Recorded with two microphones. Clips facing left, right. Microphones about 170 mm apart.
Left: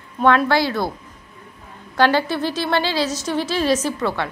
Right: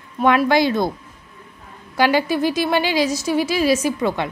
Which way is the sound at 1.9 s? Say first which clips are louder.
Even; 10° right (ahead or behind).